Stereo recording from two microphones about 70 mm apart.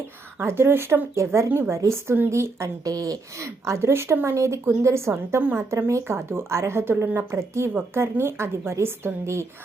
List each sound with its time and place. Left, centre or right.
0.3 s speech: right
2.8 s speech: right
3.3 s speech: right